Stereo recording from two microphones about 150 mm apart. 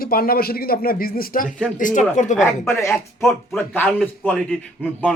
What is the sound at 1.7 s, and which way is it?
Speech, 55° left (ahead or behind).